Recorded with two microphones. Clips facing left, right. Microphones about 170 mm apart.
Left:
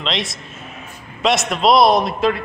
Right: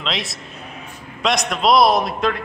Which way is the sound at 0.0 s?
Centre (ahead or behind).